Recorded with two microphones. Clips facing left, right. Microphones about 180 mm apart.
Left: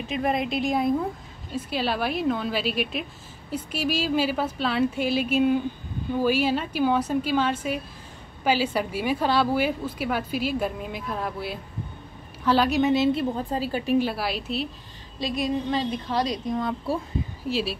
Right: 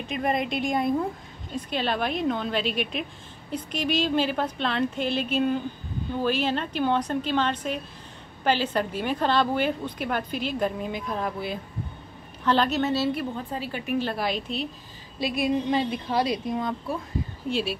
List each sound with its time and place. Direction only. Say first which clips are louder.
0.0 s a woman's voice: left 1 dB; centre (ahead or behind); by 13.9 s 35° left (ahead or behind)
13.9 s a woman's voice: left 1 dB; 5° left (ahead or behind)
15.1 s a woman's voice: right 1 dB; 10° right (ahead or behind)
17.5 s a woman's voice: even; centre (ahead or behind)